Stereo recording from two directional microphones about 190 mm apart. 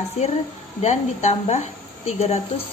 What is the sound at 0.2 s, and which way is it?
Speech, 35° left (ahead or behind).